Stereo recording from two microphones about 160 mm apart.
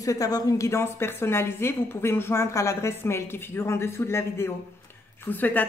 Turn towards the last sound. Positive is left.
turn(degrees=10)  # may be behind; listen again after turning